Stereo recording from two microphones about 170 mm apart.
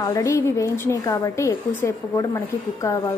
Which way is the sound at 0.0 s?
20° left (ahead or behind).